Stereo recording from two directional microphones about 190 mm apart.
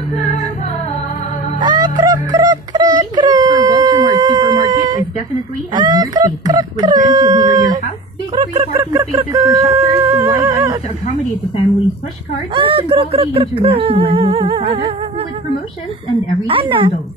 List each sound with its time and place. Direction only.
1.6 s music: 20° right (ahead or behind)
3.0 s whimper: 20° right (ahead or behind)
5.7 s speech: 25° right (ahead or behind)
8.9 s speech: 15° right (ahead or behind)
12.5 s speech: 30° right (ahead or behind)
16.4 s speech: 25° right (ahead or behind)